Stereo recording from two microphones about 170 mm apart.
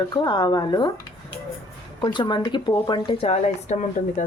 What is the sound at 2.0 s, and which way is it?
A woman's voice, 25° left (ahead or behind).